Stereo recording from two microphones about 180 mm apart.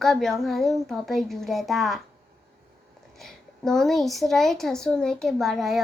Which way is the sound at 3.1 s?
Centre (ahead or behind).